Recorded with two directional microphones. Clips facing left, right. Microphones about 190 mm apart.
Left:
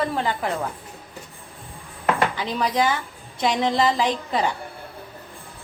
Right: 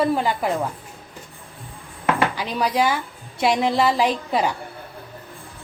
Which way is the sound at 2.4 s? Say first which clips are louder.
Right 1 dB; 10° right (ahead or behind).